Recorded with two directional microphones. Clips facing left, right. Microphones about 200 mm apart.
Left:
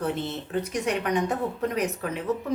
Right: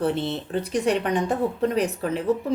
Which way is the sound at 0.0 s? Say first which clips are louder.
Right 4 dB; 30° right (ahead or behind).